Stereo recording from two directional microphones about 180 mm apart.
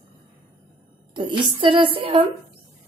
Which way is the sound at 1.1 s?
25° right (ahead or behind).